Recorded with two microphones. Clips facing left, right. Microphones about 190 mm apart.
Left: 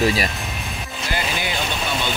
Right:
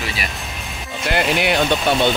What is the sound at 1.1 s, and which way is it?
Speech, 65° right (ahead or behind).